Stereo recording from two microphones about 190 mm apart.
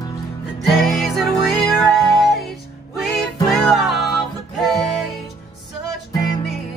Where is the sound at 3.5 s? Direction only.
Centre (ahead or behind).